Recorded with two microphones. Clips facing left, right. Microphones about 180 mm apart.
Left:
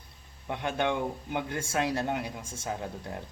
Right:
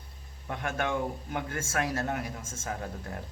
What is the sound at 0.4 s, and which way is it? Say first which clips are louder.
Speech: left 3 dB; 20° left (ahead or behind).